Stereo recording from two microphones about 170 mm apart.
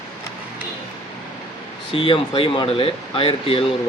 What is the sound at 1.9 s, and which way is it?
Speech, 30° left (ahead or behind).